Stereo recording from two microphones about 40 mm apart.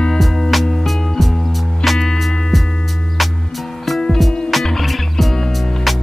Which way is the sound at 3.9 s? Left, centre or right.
Centre.